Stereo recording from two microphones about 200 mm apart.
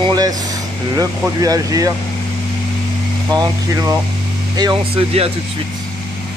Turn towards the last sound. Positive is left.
turn(degrees=-30)  # may be behind; listen again after turning